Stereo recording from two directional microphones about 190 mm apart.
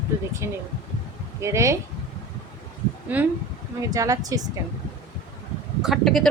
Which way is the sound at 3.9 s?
20° right (ahead or behind).